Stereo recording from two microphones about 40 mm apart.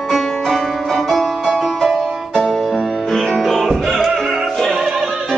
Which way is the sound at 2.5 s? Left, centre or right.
Centre.